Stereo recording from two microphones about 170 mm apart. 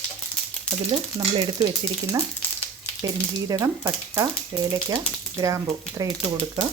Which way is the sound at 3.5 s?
15° right (ahead or behind).